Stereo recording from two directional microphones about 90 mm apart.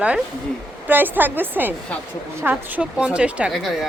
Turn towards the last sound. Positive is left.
turn(degrees=0)  # may be behind; listen again after turning